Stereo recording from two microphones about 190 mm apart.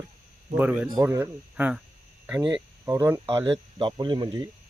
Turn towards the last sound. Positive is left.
turn(degrees=-25)  # may be behind; listen again after turning